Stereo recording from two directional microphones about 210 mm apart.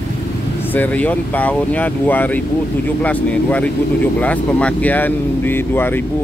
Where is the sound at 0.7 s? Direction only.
5° left (ahead or behind).